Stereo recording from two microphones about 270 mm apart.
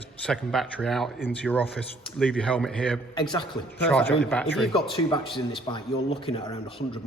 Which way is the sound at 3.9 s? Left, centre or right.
Centre.